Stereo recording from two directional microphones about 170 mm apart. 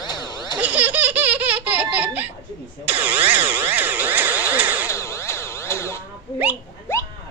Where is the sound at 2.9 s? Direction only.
10° right (ahead or behind).